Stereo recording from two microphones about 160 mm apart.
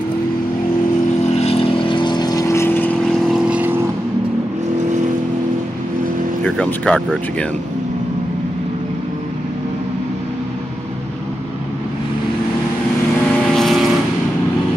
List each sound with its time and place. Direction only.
1.3 s vehicle: 40° left (ahead or behind); by 3.7 s 5° right (ahead or behind)
6.4 s speech: 5° left (ahead or behind)
13.5 s vehicle: centre (ahead or behind)